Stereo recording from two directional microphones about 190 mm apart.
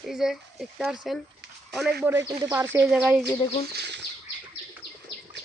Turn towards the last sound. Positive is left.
turn(degrees=-60)  # may be behind; listen again after turning